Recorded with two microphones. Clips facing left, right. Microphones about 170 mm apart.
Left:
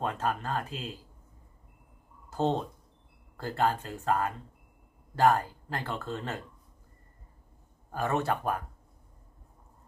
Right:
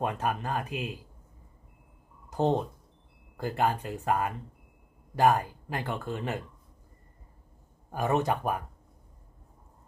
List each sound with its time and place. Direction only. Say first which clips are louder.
0.0 s speech: right 1 dB; 15° right (ahead or behind)
2.3 s speech: right 2 dB; 15° right (ahead or behind)
7.9 s speech: right 2 dB; 15° right (ahead or behind)